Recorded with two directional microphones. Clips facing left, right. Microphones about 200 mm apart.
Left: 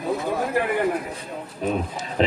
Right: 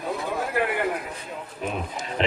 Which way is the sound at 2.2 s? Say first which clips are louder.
Left 4 dB; 40° left (ahead or behind).